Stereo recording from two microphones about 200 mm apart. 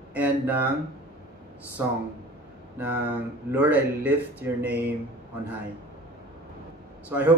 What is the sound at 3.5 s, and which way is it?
Mantra, 10° right (ahead or behind).